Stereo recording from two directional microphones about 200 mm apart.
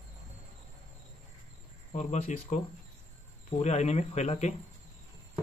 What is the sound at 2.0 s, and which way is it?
Speech, 35° left (ahead or behind).